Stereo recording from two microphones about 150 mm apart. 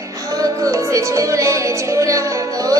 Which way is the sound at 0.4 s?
20° right (ahead or behind).